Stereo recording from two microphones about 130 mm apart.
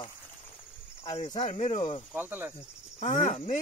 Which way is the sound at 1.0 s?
50° left (ahead or behind).